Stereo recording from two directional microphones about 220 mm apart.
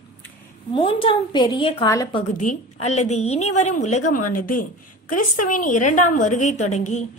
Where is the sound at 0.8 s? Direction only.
25° left (ahead or behind).